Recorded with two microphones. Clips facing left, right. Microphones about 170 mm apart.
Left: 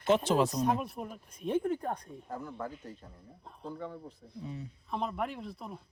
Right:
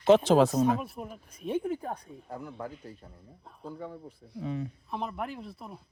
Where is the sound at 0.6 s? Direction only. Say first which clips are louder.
Right 3 dB; centre (ahead or behind).